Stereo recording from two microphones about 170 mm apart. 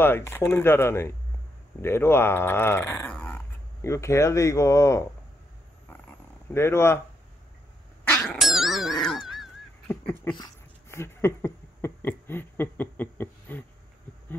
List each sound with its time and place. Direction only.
0.0 s speech: 15° left (ahead or behind)
3.8 s speech: 15° left (ahead or behind)
6.5 s speech: 15° left (ahead or behind)
8.1 s cat: centre (ahead or behind)
10.3 s dog: 20° left (ahead or behind)